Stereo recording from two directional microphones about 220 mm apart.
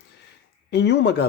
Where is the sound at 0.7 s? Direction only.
50° left (ahead or behind).